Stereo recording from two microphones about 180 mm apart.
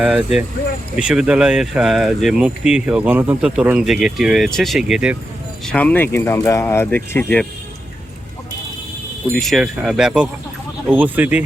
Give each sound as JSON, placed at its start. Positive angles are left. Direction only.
{"t": 0.0, "sound": "speech", "side_deg": -10}
{"t": 5.6, "sound": "speech", "side_deg": 10}
{"t": 9.3, "sound": "speech", "side_deg": 0}